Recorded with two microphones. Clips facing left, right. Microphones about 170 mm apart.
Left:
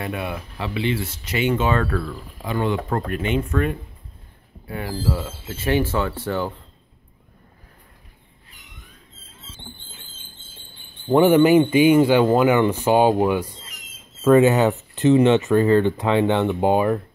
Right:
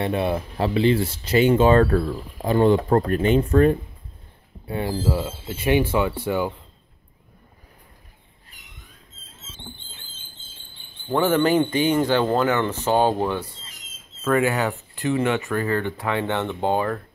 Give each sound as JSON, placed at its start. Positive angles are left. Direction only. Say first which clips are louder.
{"t": 0.0, "sound": "speech", "louder": "right 5 dB", "side_deg": -30}
{"t": 4.6, "sound": "speech", "louder": "right 2 dB", "side_deg": -25}
{"t": 11.1, "sound": "speech", "louder": "left 5 dB", "side_deg": 15}
{"t": 14.2, "sound": "speech", "louder": "left 7 dB", "side_deg": 20}